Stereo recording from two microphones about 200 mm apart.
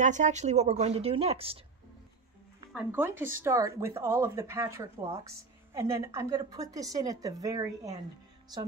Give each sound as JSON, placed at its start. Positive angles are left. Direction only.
{"t": 0.0, "sound": "speech", "side_deg": -40}
{"t": 2.7, "sound": "a woman's voice", "side_deg": -10}